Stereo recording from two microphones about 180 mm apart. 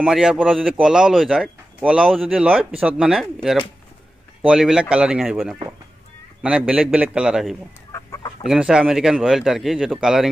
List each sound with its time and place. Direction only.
0.0 s speech: 5° right (ahead or behind)
7.9 s chicken: 20° left (ahead or behind)
8.5 s speech: 5° right (ahead or behind)